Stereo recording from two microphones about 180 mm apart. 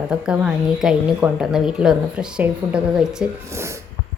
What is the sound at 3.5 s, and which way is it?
Speech, 15° right (ahead or behind).